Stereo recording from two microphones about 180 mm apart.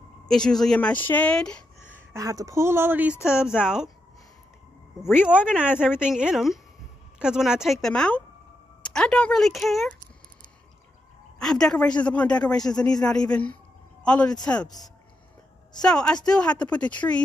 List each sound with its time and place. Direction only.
0.3 s a woman's voice: 5° left (ahead or behind)
2.1 s a woman's voice: 20° right (ahead or behind)
5.0 s a woman's voice: 5° right (ahead or behind)
11.3 s a woman's voice: 5° left (ahead or behind)
15.8 s a woman's voice: 5° left (ahead or behind)